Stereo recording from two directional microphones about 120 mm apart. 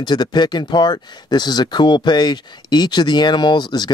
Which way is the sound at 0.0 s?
35° left (ahead or behind).